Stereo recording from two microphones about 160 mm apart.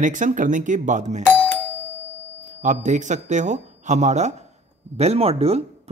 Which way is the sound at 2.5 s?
50° right (ahead or behind).